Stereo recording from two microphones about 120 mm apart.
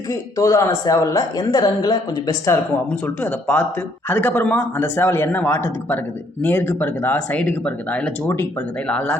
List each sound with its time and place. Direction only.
0.1 s speech: 25° left (ahead or behind)
3.2 s speech: 15° left (ahead or behind)